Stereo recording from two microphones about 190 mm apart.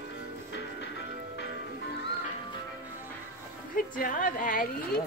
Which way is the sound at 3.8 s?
45° left (ahead or behind).